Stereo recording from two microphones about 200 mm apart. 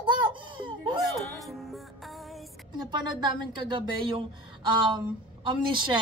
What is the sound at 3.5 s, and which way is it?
A woman's voice, 25° right (ahead or behind).